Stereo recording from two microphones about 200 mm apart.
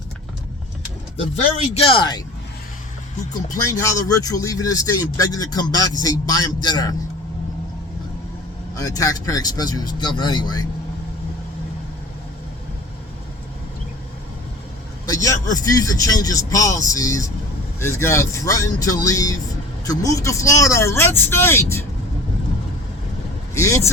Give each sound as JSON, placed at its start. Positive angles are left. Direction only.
{"t": 1.1, "sound": "speech", "side_deg": 35}
{"t": 3.3, "sound": "speech", "side_deg": 15}
{"t": 8.7, "sound": "a man's voice", "side_deg": 15}
{"t": 15.0, "sound": "speech", "side_deg": 20}
{"t": 23.6, "sound": "speech", "side_deg": 15}